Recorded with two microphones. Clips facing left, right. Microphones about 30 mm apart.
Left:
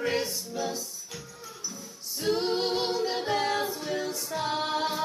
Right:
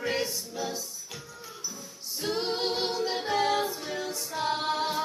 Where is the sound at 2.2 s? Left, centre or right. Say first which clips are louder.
Left 3 dB; centre.